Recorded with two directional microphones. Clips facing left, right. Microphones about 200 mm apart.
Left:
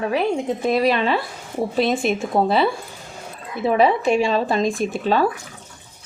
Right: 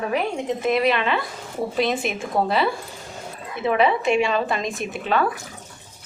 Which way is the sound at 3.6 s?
35° left (ahead or behind).